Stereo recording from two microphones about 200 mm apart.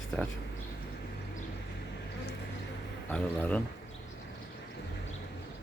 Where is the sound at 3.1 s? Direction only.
5° left (ahead or behind).